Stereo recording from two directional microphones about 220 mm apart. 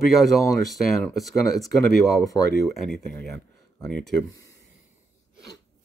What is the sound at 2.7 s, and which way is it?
Speech, centre (ahead or behind).